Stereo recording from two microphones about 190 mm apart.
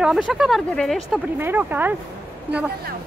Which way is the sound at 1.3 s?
10° right (ahead or behind).